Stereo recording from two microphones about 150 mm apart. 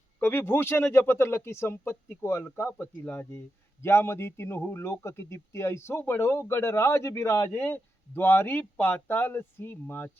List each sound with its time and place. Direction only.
0.2 s a man's voice: 15° left (ahead or behind)